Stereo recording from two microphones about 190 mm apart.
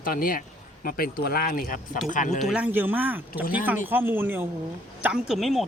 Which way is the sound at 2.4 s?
5° right (ahead or behind).